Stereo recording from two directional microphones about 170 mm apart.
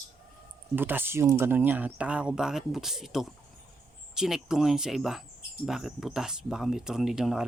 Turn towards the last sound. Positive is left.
turn(degrees=-5)  # may be behind; listen again after turning